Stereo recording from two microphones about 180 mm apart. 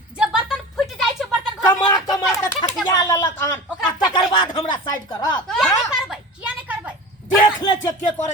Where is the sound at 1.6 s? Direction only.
20° left (ahead or behind).